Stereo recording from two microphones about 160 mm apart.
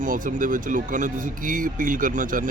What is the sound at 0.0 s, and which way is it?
Speech, 55° right (ahead or behind).